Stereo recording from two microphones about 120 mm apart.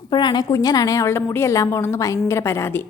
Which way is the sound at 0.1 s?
40° left (ahead or behind).